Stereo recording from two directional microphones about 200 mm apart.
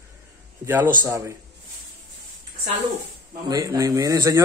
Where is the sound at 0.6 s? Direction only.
10° right (ahead or behind).